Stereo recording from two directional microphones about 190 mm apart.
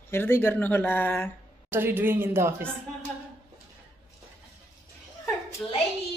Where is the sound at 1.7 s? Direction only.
10° right (ahead or behind).